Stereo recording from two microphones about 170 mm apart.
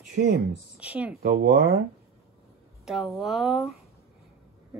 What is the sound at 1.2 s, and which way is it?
Speech, 65° right (ahead or behind).